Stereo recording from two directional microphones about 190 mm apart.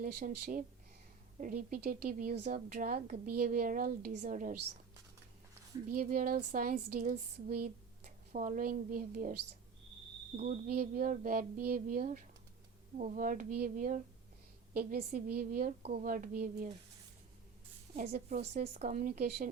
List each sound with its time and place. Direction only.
0.0 s a woman's voice: 50° right (ahead or behind)
5.9 s a woman's voice: 50° right (ahead or behind)
10.4 s a woman's voice: 50° right (ahead or behind)
17.9 s a woman's voice: 45° right (ahead or behind)